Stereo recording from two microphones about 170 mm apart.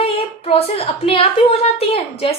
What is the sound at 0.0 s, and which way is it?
A woman's voice, 35° left (ahead or behind).